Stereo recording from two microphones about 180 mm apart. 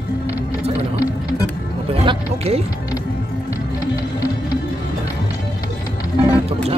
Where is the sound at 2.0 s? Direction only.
35° right (ahead or behind).